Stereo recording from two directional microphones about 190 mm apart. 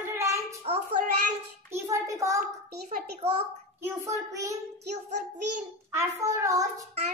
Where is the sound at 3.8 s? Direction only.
15° right (ahead or behind).